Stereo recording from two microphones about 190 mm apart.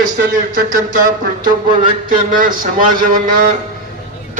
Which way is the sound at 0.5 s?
45° right (ahead or behind).